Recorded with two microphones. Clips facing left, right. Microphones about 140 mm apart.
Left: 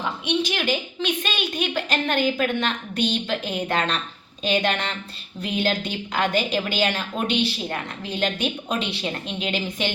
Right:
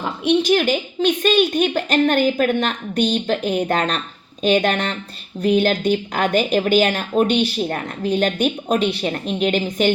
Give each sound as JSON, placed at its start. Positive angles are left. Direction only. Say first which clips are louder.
{"t": 0.0, "sound": "a woman's voice", "louder": "right 6 dB", "side_deg": -50}